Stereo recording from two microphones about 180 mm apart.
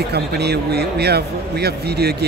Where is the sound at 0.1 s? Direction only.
65° right (ahead or behind).